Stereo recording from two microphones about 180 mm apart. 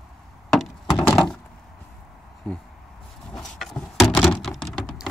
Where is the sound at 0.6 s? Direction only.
5° left (ahead or behind).